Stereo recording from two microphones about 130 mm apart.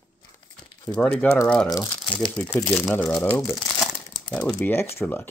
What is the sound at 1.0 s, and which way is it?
Speech, 10° left (ahead or behind).